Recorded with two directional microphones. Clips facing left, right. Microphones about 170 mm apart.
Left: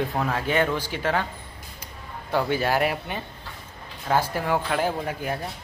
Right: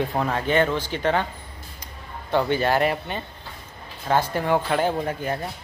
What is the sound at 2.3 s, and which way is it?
Speech, 5° left (ahead or behind).